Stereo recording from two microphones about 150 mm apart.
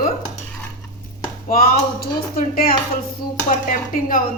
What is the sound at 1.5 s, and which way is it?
Speech, 80° left.